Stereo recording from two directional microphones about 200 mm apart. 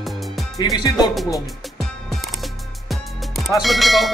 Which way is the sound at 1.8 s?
Centre (ahead or behind).